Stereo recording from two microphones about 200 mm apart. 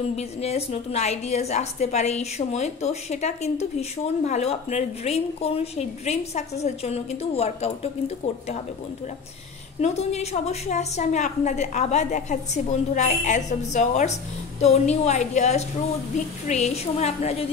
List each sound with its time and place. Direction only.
0.1 s a woman's voice: 30° left (ahead or behind)
9.8 s a woman's voice: 35° left (ahead or behind)